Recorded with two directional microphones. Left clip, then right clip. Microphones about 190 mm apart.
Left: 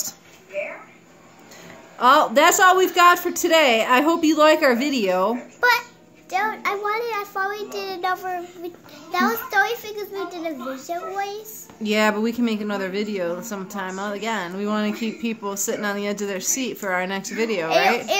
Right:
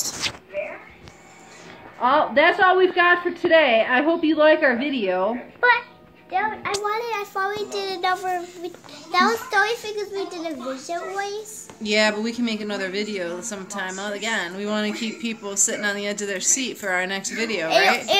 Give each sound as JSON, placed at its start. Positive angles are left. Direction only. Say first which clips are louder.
{"t": 2.0, "sound": "a woman's voice", "louder": "left 3 dB", "side_deg": 45}
{"t": 5.6, "sound": "child singing", "louder": "right 1 dB", "side_deg": 5}
{"t": 11.8, "sound": "speech", "louder": "even", "side_deg": 35}
{"t": 17.6, "sound": "a child's voice", "louder": "right 1 dB", "side_deg": -15}